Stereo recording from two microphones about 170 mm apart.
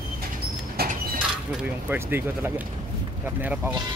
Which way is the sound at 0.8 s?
60° right (ahead or behind).